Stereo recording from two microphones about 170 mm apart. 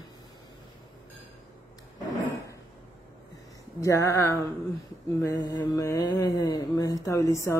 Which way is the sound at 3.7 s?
15° left (ahead or behind).